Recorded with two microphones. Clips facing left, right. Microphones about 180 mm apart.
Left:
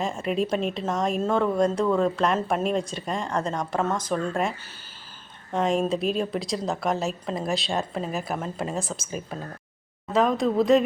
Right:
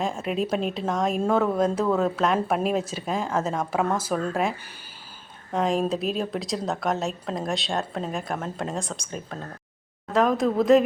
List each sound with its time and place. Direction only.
0.0 s a woman's voice: centre (ahead or behind)